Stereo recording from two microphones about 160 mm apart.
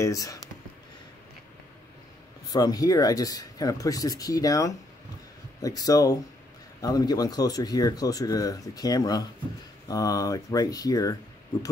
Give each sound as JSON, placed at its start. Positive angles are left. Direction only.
{"t": 0.0, "sound": "speech", "side_deg": 20}
{"t": 2.5, "sound": "speech", "side_deg": 25}